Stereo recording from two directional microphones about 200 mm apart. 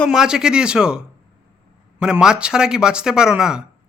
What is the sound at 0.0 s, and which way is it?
Speech, centre (ahead or behind).